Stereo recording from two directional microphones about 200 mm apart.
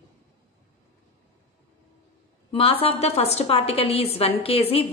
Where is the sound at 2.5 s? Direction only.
30° left (ahead or behind).